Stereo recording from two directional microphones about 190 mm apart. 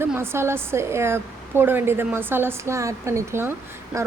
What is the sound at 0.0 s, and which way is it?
Speech, 10° right (ahead or behind).